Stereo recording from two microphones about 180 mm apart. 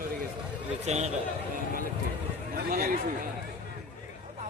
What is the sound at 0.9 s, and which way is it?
Speech, 40° right (ahead or behind).